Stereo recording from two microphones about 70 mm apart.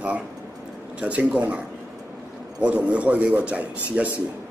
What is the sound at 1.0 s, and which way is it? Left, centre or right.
A man's voice, centre.